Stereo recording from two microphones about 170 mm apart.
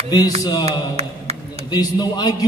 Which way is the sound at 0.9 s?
40° right (ahead or behind).